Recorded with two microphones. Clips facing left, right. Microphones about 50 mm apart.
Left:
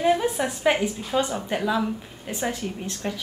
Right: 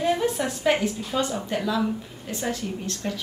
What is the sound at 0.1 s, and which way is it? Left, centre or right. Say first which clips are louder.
A woman's voice: left 1 dB; centre.